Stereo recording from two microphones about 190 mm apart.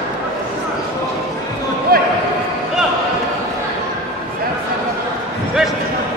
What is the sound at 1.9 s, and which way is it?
Basketball bounce, 50° right (ahead or behind).